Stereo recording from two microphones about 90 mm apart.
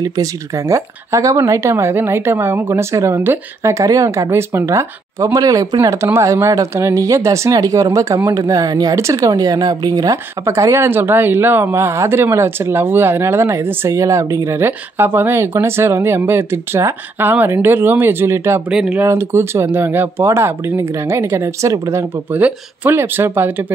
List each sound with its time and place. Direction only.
0.0 s speech: 40° right (ahead or behind)
10.4 s speech: 35° right (ahead or behind)
18.7 s speech: 10° right (ahead or behind)
19.0 s speech: 30° right (ahead or behind)
22.3 s speech: 25° right (ahead or behind)